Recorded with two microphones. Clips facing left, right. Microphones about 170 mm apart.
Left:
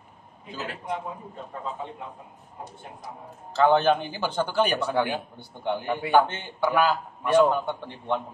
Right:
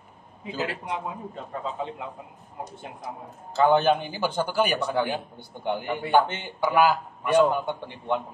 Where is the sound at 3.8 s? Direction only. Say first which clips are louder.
Even; 15° right (ahead or behind).